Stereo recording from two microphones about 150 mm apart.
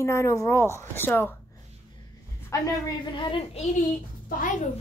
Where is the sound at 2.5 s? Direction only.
20° left (ahead or behind).